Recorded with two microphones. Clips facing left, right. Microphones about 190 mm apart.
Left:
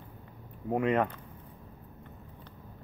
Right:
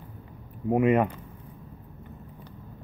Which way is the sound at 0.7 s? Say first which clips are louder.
Right 6 dB; 10° right (ahead or behind).